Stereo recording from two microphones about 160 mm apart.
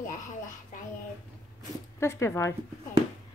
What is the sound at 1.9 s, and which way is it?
Speech, 15° left (ahead or behind).